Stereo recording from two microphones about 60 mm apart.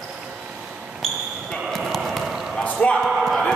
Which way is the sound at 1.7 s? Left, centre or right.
Centre.